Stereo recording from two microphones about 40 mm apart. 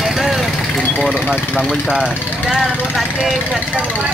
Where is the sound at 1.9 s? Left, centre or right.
Right.